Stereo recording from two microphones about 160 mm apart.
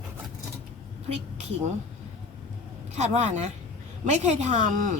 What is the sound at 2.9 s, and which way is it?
Speech, 45° right (ahead or behind).